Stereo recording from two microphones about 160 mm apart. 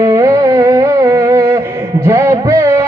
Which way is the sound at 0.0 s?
20° right (ahead or behind).